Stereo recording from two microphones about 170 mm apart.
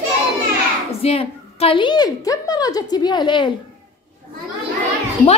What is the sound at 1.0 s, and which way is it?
A woman's voice, 35° left (ahead or behind).